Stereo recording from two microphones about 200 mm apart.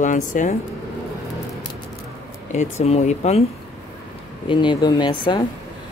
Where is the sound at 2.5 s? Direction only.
35° left (ahead or behind).